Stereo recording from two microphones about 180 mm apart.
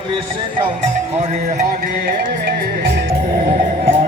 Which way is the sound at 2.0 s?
65° right (ahead or behind).